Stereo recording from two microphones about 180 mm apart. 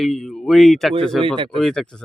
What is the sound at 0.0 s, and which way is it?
Speech, centre (ahead or behind).